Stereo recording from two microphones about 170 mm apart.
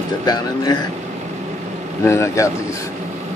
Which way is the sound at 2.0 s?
15° left (ahead or behind).